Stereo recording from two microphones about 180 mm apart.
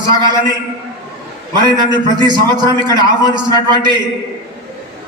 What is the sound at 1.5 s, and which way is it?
A man's voice, 25° right (ahead or behind).